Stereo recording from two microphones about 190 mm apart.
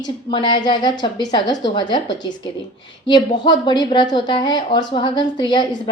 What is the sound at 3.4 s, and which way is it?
A woman's voice, 25° left (ahead or behind).